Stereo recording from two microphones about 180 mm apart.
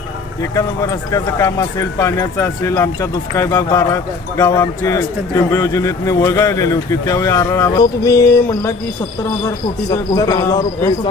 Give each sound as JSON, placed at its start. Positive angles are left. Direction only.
{"t": 0.5, "sound": "speech", "side_deg": 15}
{"t": 9.9, "sound": "a man's voice", "side_deg": 20}